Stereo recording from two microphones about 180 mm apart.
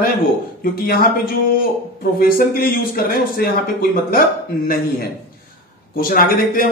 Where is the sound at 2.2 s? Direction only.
55° left (ahead or behind).